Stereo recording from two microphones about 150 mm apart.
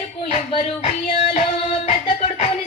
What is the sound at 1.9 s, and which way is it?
Music, 45° left (ahead or behind).